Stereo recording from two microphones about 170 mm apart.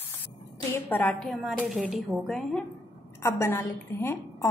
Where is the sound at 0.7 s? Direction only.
10° left (ahead or behind).